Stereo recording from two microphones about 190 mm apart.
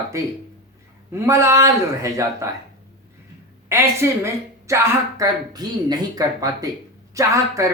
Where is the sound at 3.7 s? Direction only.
15° right (ahead or behind).